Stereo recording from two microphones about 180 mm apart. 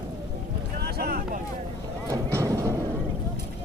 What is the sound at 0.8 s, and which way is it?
Vehicle, 60° right (ahead or behind).